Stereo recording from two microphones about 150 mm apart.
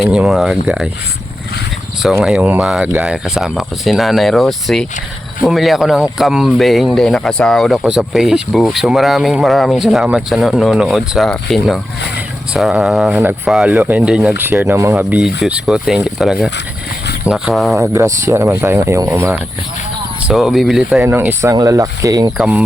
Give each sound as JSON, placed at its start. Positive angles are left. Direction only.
{"t": 0.0, "sound": "speech", "side_deg": -5}
{"t": 2.2, "sound": "speech", "side_deg": -5}
{"t": 17.7, "sound": "speech", "side_deg": -20}
{"t": 20.2, "sound": "speech", "side_deg": -5}
{"t": 21.0, "sound": "speech", "side_deg": -15}
{"t": 22.4, "sound": "speech", "side_deg": -5}